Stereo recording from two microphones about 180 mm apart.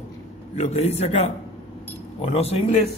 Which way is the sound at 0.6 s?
35° left (ahead or behind).